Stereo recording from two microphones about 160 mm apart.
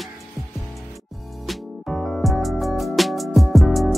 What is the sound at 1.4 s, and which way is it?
Music, centre (ahead or behind).